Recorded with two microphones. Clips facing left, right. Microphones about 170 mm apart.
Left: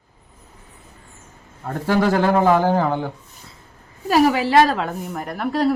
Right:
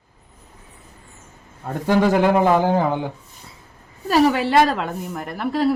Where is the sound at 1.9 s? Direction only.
15° right (ahead or behind).